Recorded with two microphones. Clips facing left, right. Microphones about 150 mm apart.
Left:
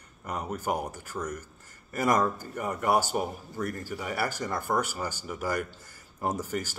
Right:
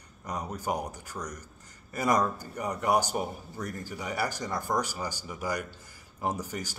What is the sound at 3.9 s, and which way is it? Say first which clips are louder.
Speech: right 1 dB; 50° left (ahead or behind).